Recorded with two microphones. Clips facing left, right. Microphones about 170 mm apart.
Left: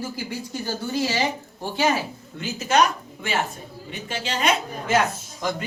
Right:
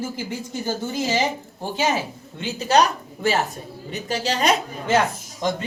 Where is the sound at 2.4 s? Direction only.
35° right (ahead or behind).